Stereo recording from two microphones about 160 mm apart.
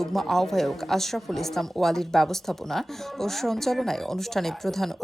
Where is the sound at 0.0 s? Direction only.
Centre (ahead or behind).